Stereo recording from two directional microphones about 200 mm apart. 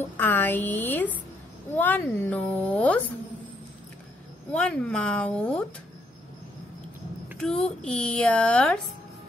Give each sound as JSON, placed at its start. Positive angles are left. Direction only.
{"t": 0.2, "sound": "speech", "side_deg": 10}
{"t": 4.5, "sound": "speech", "side_deg": 5}
{"t": 7.3, "sound": "speech", "side_deg": 5}